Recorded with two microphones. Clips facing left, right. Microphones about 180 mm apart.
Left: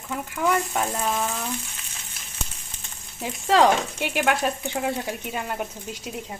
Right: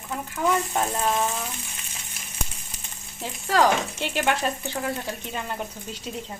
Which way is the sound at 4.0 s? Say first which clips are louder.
Left 1 dB; 10° left (ahead or behind).